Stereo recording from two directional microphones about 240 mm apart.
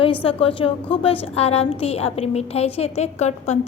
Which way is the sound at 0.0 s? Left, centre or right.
Left.